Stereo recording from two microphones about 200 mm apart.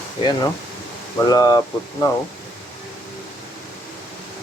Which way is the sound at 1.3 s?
20° left (ahead or behind).